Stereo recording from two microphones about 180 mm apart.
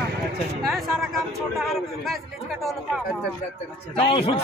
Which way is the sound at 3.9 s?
30° left (ahead or behind).